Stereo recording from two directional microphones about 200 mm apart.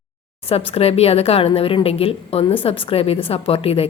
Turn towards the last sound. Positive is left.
turn(degrees=30)  # may be behind; listen again after turning